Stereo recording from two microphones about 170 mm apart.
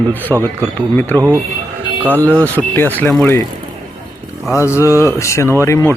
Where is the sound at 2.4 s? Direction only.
10° left (ahead or behind).